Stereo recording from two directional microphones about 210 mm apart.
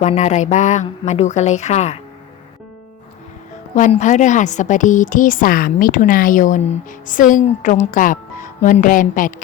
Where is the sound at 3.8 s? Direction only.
35° left (ahead or behind).